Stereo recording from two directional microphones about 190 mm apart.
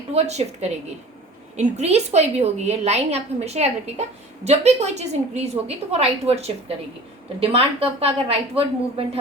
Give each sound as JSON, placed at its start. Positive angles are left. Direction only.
{"t": 0.1, "sound": "a woman's voice", "side_deg": -35}